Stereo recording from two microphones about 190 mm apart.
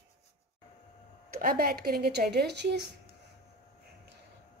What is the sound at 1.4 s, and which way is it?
Speech, 55° right (ahead or behind).